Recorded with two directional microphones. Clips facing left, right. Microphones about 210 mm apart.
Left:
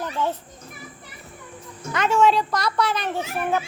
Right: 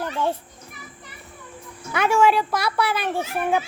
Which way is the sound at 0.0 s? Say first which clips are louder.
Right 1 dB; 10° right (ahead or behind).